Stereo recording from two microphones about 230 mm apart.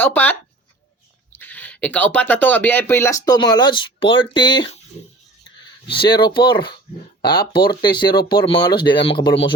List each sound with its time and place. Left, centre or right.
0.0 s speech: centre
5.9 s speech: left